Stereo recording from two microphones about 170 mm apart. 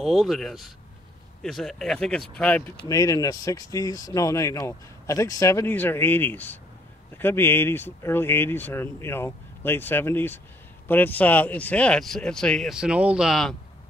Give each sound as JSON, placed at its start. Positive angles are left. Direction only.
{"t": 0.0, "sound": "speech", "side_deg": 0}
{"t": 2.8, "sound": "speech", "side_deg": 20}